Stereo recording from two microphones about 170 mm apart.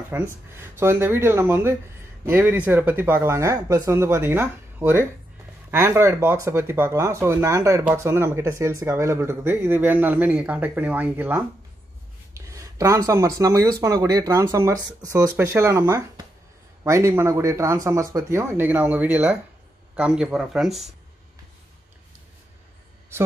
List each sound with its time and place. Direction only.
0.1 s speech: 15° right (ahead or behind)